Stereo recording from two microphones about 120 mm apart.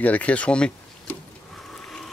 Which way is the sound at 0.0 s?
10° left (ahead or behind).